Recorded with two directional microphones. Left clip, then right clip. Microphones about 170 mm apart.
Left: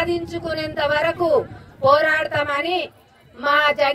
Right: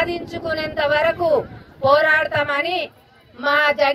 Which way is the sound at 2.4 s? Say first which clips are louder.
Right 1 dB; 45° left (ahead or behind).